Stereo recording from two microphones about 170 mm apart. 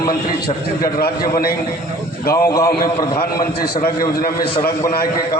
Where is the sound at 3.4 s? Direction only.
60° left (ahead or behind).